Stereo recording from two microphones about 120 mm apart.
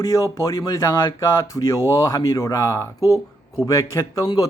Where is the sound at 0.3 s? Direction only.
25° left (ahead or behind).